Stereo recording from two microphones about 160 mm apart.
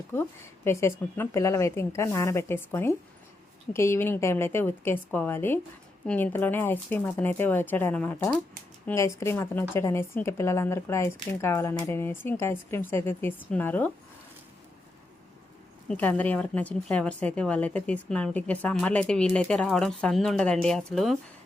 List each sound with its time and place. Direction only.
0.1 s speech: 15° left (ahead or behind)
15.9 s speech: 10° left (ahead or behind)